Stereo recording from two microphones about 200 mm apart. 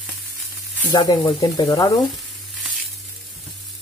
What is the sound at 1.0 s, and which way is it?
Speech, 20° left (ahead or behind).